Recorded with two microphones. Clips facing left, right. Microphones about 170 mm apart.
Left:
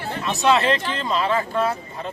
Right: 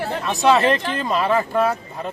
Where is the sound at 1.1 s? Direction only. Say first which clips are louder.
Right 2 dB; 45° right (ahead or behind).